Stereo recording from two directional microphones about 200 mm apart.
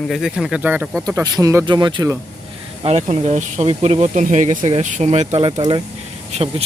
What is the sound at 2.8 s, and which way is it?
Speech, 35° right (ahead or behind).